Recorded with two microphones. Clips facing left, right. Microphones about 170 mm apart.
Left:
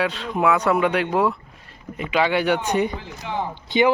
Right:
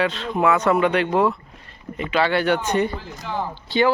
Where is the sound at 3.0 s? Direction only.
Centre (ahead or behind).